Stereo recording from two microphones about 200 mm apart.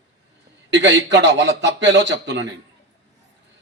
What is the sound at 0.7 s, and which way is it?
A man's voice, 65° right (ahead or behind).